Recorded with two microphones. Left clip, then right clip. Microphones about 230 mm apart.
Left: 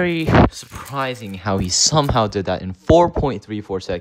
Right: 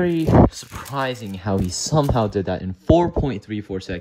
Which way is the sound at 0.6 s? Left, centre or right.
Right.